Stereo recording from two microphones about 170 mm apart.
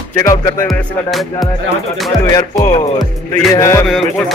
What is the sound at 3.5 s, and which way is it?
Music, 20° left (ahead or behind).